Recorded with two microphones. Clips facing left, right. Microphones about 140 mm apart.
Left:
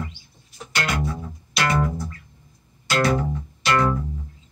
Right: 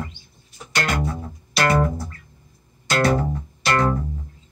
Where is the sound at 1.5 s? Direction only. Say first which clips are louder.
Right 3 dB; 40° right (ahead or behind).